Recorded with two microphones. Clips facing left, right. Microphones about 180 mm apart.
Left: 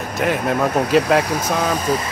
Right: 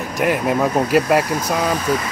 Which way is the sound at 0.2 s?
10° right (ahead or behind).